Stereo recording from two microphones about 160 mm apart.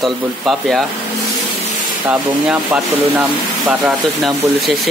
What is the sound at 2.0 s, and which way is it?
Speech, 5° right (ahead or behind).